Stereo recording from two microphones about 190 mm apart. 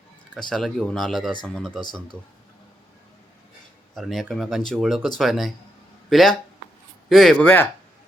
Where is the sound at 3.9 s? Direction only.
Centre (ahead or behind).